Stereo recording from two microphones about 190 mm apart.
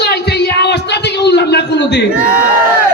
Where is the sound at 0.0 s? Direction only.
60° left (ahead or behind).